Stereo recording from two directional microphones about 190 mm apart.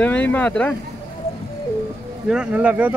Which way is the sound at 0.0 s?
10° left (ahead or behind).